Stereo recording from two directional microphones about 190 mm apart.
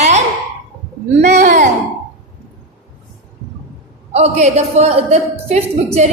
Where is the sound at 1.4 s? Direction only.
40° right (ahead or behind).